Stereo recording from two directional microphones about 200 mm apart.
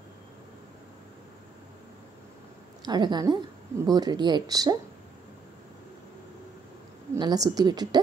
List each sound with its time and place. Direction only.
2.8 s a woman's voice: 20° right (ahead or behind)
7.2 s a woman's voice: 20° right (ahead or behind)